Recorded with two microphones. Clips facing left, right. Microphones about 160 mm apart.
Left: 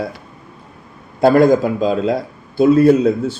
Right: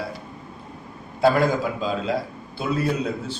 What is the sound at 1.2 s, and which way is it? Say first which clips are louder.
Speech: left 8 dB; 50° left (ahead or behind).